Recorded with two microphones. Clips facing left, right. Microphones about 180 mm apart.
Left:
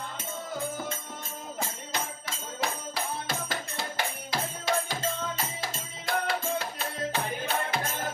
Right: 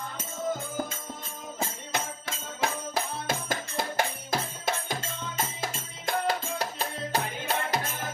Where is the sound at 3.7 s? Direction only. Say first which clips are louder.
Right 7 dB; 50° right (ahead or behind).